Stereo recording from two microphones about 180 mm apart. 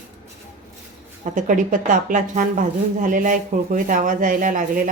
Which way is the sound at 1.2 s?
45° right (ahead or behind).